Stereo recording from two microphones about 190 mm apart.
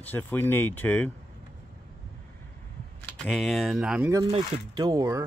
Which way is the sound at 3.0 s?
5° left (ahead or behind).